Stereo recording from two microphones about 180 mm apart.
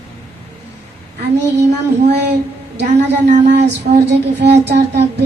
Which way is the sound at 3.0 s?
45° right (ahead or behind).